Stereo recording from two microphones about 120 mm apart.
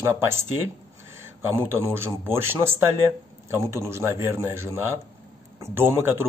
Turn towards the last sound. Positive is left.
turn(degrees=-20)  # may be behind; listen again after turning